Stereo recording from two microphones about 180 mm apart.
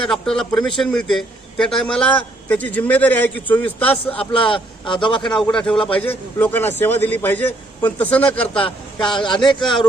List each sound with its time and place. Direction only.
0.0 s a man's voice: centre (ahead or behind)
4.1 s a man's voice: 30° left (ahead or behind)
5.2 s a man's voice: 5° left (ahead or behind)
8.5 s a man's voice: 25° left (ahead or behind)